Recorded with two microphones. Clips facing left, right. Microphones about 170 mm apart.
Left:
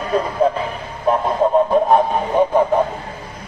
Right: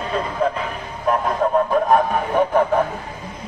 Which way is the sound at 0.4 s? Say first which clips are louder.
Left 4 dB; 35° left (ahead or behind).